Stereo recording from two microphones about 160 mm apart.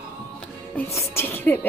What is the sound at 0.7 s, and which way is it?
Speech, 15° left (ahead or behind).